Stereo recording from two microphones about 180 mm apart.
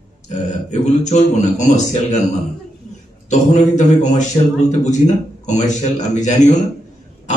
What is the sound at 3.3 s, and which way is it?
A man's voice, 40° left (ahead or behind).